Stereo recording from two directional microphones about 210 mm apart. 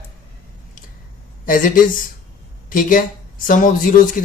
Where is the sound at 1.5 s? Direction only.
40° left (ahead or behind).